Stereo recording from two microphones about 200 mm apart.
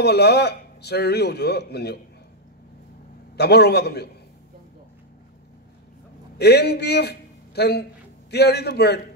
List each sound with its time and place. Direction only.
0.0 s speech: 55° left (ahead or behind)
3.3 s a man's voice: 55° left (ahead or behind)
6.3 s a man's voice: 55° left (ahead or behind)